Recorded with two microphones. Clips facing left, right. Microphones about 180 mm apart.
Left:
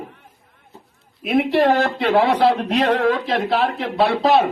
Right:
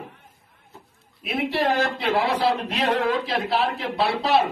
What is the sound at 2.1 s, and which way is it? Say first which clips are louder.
A man's voice: left 7 dB; 40° left (ahead or behind).